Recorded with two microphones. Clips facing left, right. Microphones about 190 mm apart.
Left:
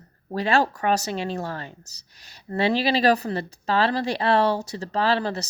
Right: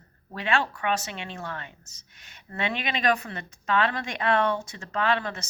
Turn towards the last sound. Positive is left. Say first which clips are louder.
# left 4 dB
turn(degrees=35)  # may be behind; listen again after turning